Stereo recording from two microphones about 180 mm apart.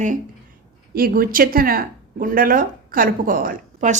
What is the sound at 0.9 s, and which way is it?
Speech, 55° right (ahead or behind).